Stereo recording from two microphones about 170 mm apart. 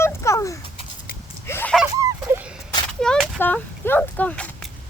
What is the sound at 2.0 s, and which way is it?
Dog, 15° right (ahead or behind).